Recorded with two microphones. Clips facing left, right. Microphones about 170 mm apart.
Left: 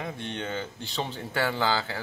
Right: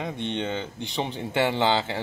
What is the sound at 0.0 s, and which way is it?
Speech, 20° right (ahead or behind).